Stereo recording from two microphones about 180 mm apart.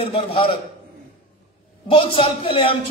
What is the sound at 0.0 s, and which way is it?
Speech, 30° left (ahead or behind).